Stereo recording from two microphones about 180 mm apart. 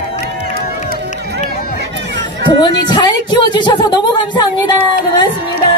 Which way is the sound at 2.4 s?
25° left (ahead or behind).